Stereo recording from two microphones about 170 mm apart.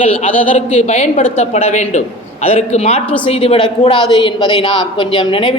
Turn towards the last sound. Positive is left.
turn(degrees=30)  # may be behind; listen again after turning